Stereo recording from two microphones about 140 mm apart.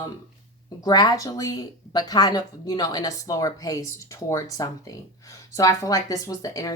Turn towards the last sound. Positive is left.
turn(degrees=25)  # may be behind; listen again after turning